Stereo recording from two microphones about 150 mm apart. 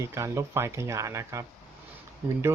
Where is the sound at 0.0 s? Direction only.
20° right (ahead or behind).